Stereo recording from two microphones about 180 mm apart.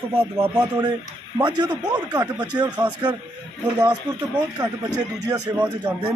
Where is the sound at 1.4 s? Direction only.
25° right (ahead or behind).